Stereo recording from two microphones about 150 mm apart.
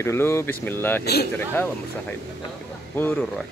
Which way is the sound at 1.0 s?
90° left.